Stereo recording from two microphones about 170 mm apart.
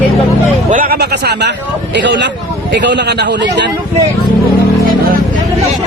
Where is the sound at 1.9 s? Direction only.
90° right.